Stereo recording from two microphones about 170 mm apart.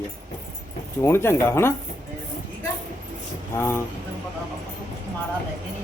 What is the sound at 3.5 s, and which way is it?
Speech, 15° left (ahead or behind).